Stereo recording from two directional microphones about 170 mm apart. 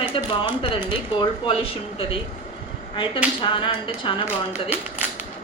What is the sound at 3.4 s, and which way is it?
Speech, 30° left (ahead or behind).